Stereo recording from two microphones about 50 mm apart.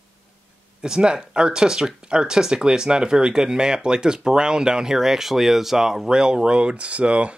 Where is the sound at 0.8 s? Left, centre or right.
Centre.